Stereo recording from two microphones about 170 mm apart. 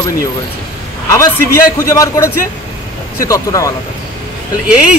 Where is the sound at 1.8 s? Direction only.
20° left (ahead or behind).